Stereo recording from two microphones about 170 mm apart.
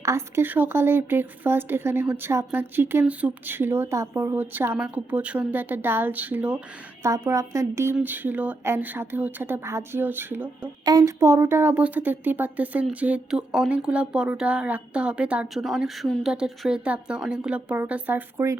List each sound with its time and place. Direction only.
0.0 s speech: 15° right (ahead or behind)